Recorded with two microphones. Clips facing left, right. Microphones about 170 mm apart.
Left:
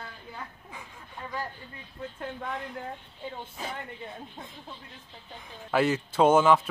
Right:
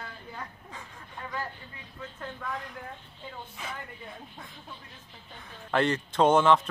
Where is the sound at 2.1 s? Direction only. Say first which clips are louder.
Left 1 dB; 25° left (ahead or behind).